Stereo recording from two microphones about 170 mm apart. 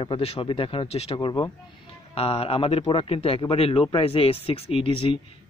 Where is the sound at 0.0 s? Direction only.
35° left (ahead or behind).